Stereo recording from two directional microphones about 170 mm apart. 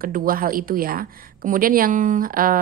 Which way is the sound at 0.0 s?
55° right (ahead or behind).